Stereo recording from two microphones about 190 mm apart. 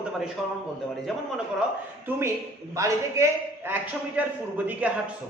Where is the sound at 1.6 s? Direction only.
10° right (ahead or behind).